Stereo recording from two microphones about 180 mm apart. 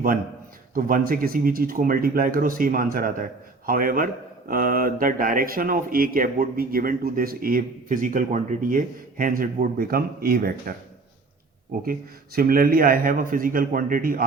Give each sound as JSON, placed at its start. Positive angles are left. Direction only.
{"t": 0.7, "sound": "speech", "side_deg": -50}
{"t": 11.9, "sound": "speech", "side_deg": -55}